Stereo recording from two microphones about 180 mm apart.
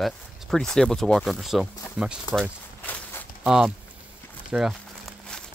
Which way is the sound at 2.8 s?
10° left (ahead or behind).